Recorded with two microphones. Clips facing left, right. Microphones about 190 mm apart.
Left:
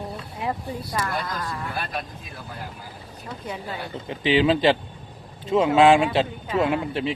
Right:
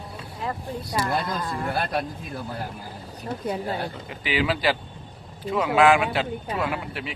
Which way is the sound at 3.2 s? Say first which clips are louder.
Right 5 dB; 40° right (ahead or behind).